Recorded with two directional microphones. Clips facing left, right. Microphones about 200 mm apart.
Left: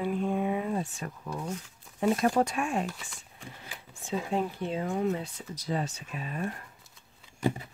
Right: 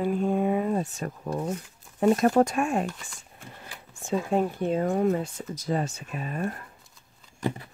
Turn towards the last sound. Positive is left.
turn(degrees=15)  # may be behind; listen again after turning